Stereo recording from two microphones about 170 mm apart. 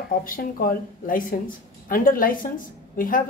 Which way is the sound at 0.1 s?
60° left (ahead or behind).